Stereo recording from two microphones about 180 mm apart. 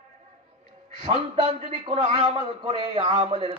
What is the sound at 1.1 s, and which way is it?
Speech, 25° right (ahead or behind).